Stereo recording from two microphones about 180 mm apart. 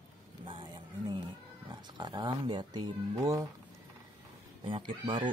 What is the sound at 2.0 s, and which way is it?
Speech, 25° right (ahead or behind).